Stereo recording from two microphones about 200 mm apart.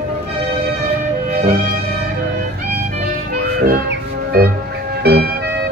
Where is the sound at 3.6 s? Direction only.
50° right (ahead or behind).